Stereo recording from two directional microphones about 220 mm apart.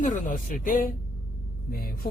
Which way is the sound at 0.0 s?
35° left (ahead or behind).